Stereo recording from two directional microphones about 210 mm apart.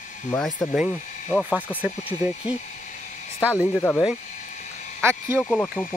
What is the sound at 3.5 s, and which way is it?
Speech, 10° left (ahead or behind).